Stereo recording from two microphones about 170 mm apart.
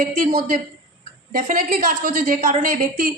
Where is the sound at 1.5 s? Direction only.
55° right (ahead or behind).